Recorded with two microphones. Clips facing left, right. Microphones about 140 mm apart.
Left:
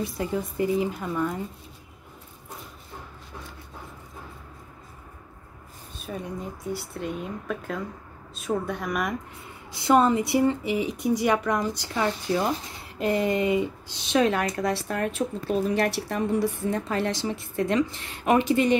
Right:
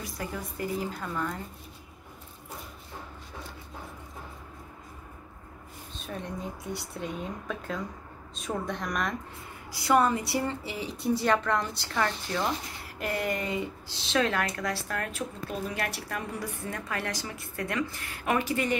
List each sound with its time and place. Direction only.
0.0 s a woman's voice: 25° left (ahead or behind)
6.0 s speech: 10° left (ahead or behind)
9.7 s a woman's voice: 25° left (ahead or behind)